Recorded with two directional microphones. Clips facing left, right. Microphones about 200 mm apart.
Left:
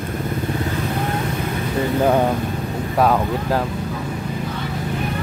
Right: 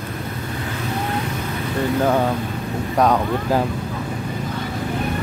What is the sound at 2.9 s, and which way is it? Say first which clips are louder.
Speech: even; 5° left (ahead or behind).